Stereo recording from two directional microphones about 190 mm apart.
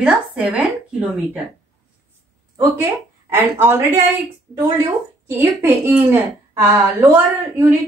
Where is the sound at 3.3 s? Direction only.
10° right (ahead or behind).